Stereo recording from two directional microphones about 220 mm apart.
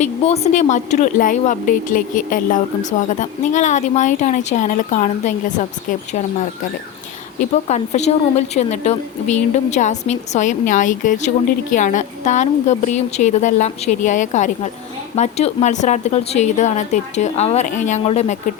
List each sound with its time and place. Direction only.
0.0 s speech: 30° left (ahead or behind)
7.7 s speech: 30° left (ahead or behind)